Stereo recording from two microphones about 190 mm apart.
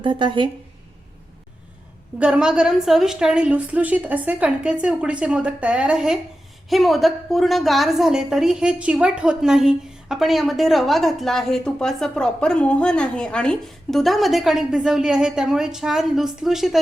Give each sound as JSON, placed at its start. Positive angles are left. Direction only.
{"t": 0.0, "sound": "a woman's voice", "side_deg": -25}
{"t": 2.1, "sound": "a woman's voice", "side_deg": -5}